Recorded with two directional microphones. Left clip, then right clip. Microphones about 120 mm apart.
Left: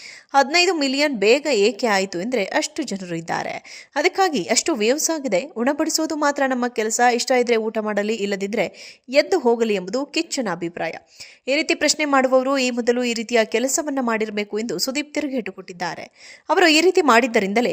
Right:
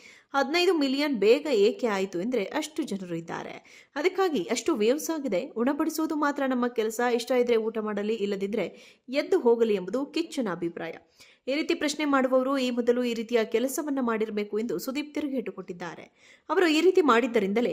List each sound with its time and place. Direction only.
0.3 s a woman's voice: 25° left (ahead or behind)